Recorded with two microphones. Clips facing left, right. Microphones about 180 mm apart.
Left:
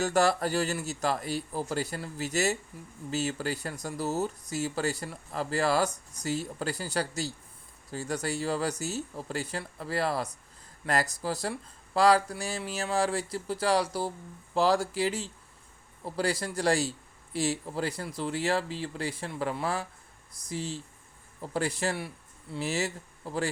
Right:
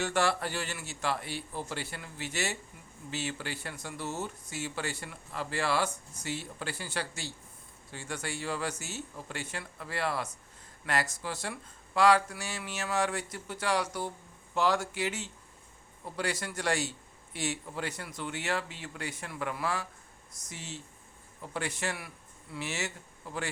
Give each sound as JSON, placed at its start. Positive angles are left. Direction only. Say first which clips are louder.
{"t": 0.0, "sound": "speech", "louder": "left 4 dB", "side_deg": 40}